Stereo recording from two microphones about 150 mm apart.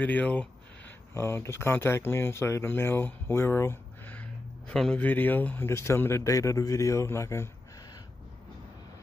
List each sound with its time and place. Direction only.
0.0 s speech: 10° left (ahead or behind)